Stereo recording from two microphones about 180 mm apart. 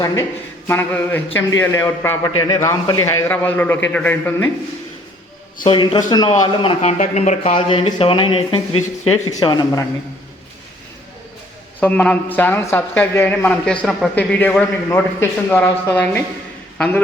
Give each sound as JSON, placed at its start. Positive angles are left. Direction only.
{"t": 0.0, "sound": "a man's voice", "side_deg": 20}
{"t": 5.6, "sound": "a man's voice", "side_deg": 30}
{"t": 7.0, "sound": "a man's voice", "side_deg": 40}
{"t": 11.8, "sound": "a man's voice", "side_deg": 10}